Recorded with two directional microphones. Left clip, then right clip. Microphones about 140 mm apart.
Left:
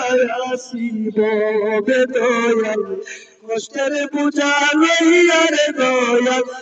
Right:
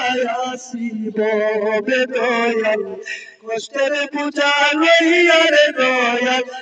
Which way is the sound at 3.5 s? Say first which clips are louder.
Right 1 dB; 60° left (ahead or behind).